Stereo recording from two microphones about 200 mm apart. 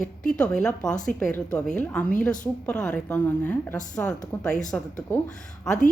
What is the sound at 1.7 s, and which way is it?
A woman's voice, 5° left (ahead or behind).